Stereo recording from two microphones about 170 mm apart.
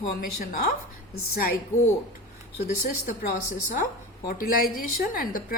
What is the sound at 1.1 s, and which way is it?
Speech, 60° left (ahead or behind).